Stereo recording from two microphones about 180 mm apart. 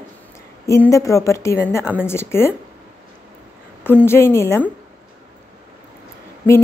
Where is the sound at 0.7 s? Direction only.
15° left (ahead or behind).